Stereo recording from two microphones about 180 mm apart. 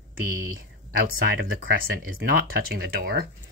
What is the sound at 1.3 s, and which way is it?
Speech, 55° right (ahead or behind).